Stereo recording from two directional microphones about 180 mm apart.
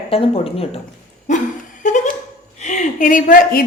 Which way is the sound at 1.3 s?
40° left (ahead or behind).